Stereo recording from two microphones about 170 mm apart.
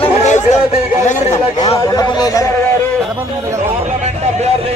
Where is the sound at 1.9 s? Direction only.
20° left (ahead or behind).